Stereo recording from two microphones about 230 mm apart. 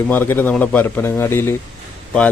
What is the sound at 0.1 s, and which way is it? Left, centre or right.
Speech, centre.